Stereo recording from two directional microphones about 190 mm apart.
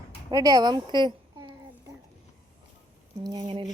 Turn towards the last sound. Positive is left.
turn(degrees=-25)  # may be behind; listen again after turning